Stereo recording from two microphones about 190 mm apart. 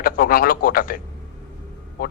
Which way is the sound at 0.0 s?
50° left (ahead or behind).